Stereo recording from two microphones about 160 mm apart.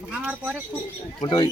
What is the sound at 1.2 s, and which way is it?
Speech, 25° left (ahead or behind).